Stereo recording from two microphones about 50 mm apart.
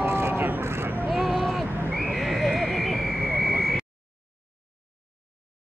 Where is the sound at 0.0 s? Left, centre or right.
Right.